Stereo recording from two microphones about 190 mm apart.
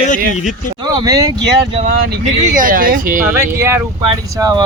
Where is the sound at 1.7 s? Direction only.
30° right (ahead or behind).